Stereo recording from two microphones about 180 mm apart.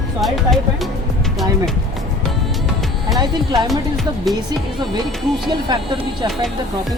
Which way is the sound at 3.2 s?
25° right (ahead or behind).